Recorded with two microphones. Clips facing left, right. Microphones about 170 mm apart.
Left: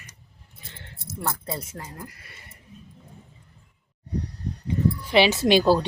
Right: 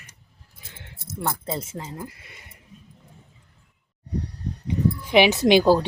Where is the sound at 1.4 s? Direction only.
25° right (ahead or behind).